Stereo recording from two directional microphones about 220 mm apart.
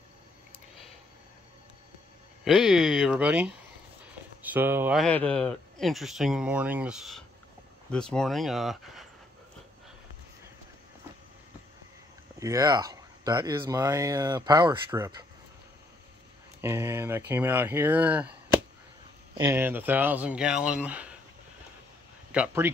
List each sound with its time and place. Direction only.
2.4 s speech: centre (ahead or behind)
4.0 s a sound: 5° right (ahead or behind)
5.0 s speech: 5° left (ahead or behind)
12.4 s speech: 15° right (ahead or behind)
16.6 s speech: 10° right (ahead or behind)
19.3 s speech: 10° right (ahead or behind)
22.3 s speech: 10° right (ahead or behind)